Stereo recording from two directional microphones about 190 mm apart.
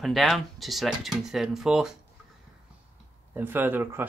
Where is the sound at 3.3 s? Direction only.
10° right (ahead or behind).